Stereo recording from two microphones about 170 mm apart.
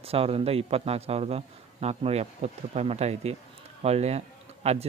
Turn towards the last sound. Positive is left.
turn(degrees=-35)  # may be behind; listen again after turning